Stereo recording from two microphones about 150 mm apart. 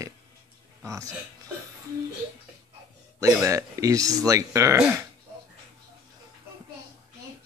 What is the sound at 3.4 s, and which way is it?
Speech, 20° right (ahead or behind).